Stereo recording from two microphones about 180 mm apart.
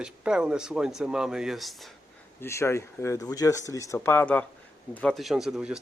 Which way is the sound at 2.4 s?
15° left (ahead or behind).